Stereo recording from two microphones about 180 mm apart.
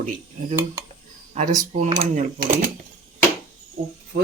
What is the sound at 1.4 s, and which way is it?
Speech, 45° right (ahead or behind).